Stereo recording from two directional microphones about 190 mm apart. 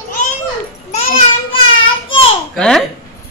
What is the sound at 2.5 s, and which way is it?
Speech, 5° left (ahead or behind).